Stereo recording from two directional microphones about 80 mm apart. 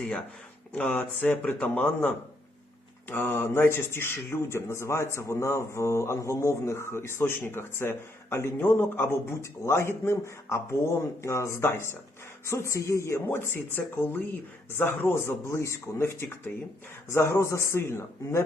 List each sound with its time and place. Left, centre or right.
0.7 s speech: centre; by 18.4 s left